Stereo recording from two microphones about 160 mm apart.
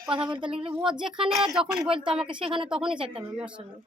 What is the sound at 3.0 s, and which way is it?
Speech, 35° right (ahead or behind).